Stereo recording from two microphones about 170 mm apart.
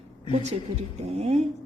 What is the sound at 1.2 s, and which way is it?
Speech, 35° right (ahead or behind).